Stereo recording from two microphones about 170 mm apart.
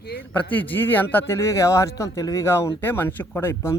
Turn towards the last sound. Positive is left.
turn(degrees=15)  # may be behind; listen again after turning